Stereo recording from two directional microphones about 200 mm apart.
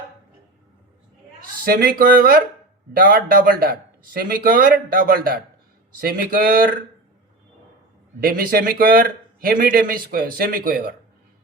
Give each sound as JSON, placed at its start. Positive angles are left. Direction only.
{"t": 1.6, "sound": "speech", "side_deg": -50}
{"t": 8.2, "sound": "speech", "side_deg": -45}